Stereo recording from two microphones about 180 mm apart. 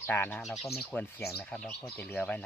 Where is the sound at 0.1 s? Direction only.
10° left (ahead or behind).